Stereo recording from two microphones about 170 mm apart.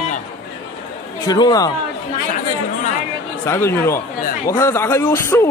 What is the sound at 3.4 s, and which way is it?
A man's voice, 15° left (ahead or behind).